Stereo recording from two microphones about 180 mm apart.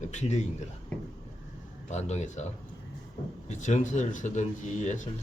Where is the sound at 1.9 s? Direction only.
40° left (ahead or behind).